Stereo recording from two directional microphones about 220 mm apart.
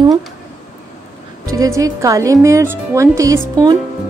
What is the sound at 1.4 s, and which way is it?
A woman's voice, 15° right (ahead or behind).